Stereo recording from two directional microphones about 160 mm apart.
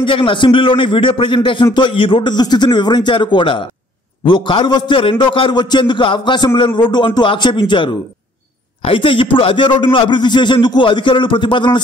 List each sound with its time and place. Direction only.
0.0 s a man's voice: 30° left (ahead or behind)